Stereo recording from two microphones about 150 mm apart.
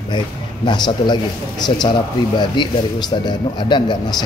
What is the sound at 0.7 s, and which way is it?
Speech, 30° left (ahead or behind).